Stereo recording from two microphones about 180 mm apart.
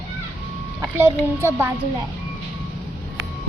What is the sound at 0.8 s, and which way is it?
Speech, 10° right (ahead or behind).